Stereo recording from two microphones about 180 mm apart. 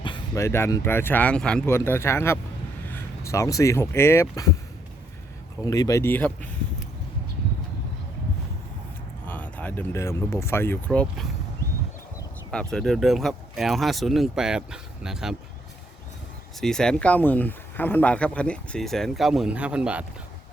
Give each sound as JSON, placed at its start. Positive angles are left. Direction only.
{"t": 0.3, "sound": "speech", "side_deg": 15}
{"t": 5.6, "sound": "speech", "side_deg": 20}
{"t": 9.2, "sound": "speech", "side_deg": 10}
{"t": 12.5, "sound": "speech", "side_deg": 5}
{"t": 16.6, "sound": "speech", "side_deg": 5}